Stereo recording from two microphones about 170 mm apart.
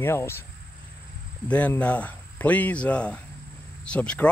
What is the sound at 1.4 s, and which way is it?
Speech, 10° left (ahead or behind).